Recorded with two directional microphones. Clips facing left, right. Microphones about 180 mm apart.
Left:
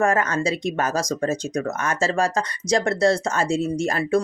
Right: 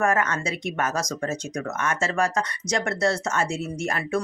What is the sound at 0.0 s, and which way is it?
Speech, 35° left (ahead or behind).